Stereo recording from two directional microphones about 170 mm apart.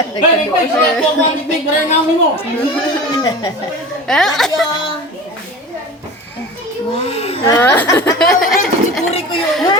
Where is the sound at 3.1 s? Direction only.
25° left (ahead or behind).